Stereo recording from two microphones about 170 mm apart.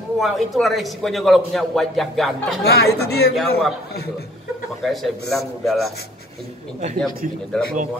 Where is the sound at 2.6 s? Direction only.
70° left (ahead or behind).